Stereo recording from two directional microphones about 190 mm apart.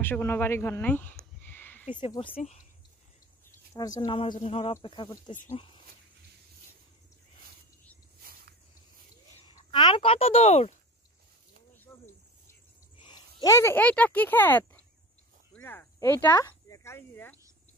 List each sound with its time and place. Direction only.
0.0 s speech: 10° left (ahead or behind)
1.4 s a sound: 10° left (ahead or behind)
2.0 s speech: 30° left (ahead or behind)
3.4 s speech: 15° left (ahead or behind)
5.3 s speech: 40° left (ahead or behind)
9.7 s speech: 25° left (ahead or behind)
12.9 s speech: 25° left (ahead or behind)